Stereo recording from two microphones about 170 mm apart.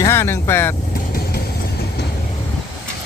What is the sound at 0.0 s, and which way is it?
Speech, 15° left (ahead or behind).